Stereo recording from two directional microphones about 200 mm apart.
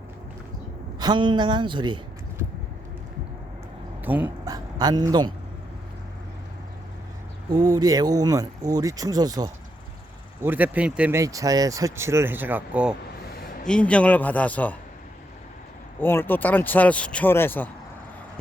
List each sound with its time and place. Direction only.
0.9 s speech: 20° right (ahead or behind)
4.0 s speech: 10° right (ahead or behind)
7.5 s speech: 20° right (ahead or behind)
10.4 s speech: 10° right (ahead or behind)
13.7 s speech: 5° left (ahead or behind)
16.0 s speech: 10° left (ahead or behind)